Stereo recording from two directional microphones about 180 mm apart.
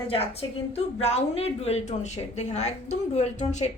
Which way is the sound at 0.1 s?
35° left (ahead or behind).